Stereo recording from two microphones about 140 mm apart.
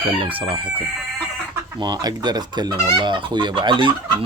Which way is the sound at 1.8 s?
30° right (ahead or behind).